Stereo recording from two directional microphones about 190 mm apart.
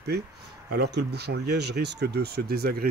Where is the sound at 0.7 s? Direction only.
60° right (ahead or behind).